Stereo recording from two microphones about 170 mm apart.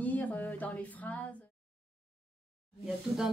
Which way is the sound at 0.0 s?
10° left (ahead or behind).